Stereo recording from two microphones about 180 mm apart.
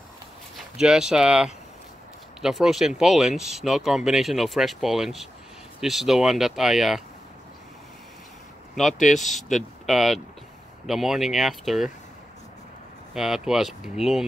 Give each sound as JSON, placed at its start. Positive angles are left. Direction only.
{"t": 0.7, "sound": "speech", "side_deg": -5}
{"t": 9.1, "sound": "speech", "side_deg": 45}
{"t": 9.6, "sound": "speech", "side_deg": 0}
{"t": 13.1, "sound": "speech", "side_deg": -5}